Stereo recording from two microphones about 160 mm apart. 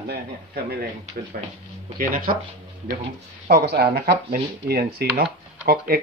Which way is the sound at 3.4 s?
80° right.